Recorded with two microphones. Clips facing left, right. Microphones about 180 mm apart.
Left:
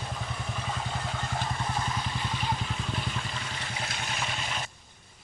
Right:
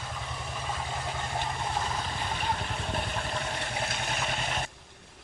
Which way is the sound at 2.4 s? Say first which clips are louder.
Even; 60° right (ahead or behind).